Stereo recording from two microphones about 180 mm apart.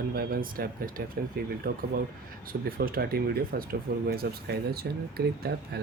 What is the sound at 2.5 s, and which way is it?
Speech, 55° right (ahead or behind).